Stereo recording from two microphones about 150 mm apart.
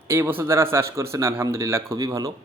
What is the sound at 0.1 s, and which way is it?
A man's voice, 15° right (ahead or behind).